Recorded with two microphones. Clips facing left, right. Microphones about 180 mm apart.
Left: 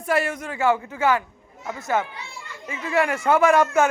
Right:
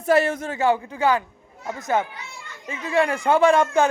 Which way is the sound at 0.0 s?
25° right (ahead or behind).